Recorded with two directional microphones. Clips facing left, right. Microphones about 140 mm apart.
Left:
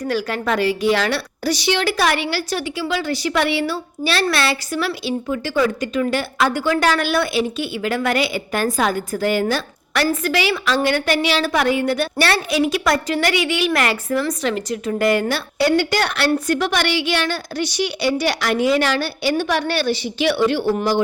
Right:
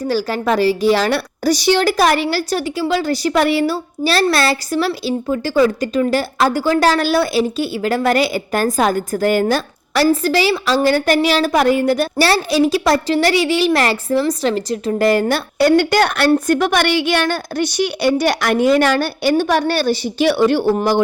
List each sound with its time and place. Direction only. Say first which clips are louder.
0.1 s a woman's voice: right 4 dB; 35° right (ahead or behind); by 21.0 s 50° right (ahead or behind)